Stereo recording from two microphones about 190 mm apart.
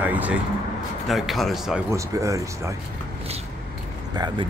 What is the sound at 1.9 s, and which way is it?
Speech, 15° right (ahead or behind).